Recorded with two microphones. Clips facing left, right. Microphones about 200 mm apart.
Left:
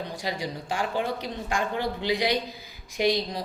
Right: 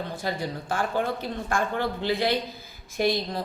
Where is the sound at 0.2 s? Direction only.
15° left (ahead or behind).